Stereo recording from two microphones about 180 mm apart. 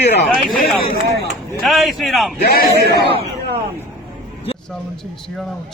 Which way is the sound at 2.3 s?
55° left (ahead or behind).